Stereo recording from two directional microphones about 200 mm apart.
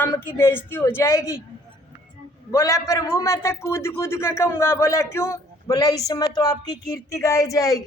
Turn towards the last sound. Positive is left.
turn(degrees=15)  # may be behind; listen again after turning